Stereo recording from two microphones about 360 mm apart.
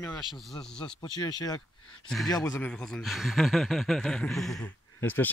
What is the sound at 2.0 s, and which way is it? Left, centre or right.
Speech, centre.